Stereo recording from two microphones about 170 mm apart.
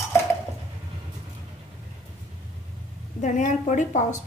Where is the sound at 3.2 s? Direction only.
45° left (ahead or behind).